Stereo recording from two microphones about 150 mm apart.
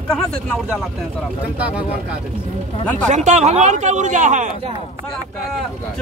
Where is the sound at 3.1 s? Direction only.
50° right (ahead or behind).